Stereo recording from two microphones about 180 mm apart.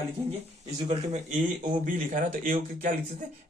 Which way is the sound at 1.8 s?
50° right (ahead or behind).